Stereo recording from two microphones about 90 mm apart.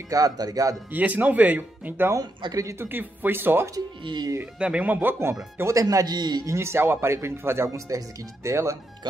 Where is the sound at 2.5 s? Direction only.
35° right (ahead or behind).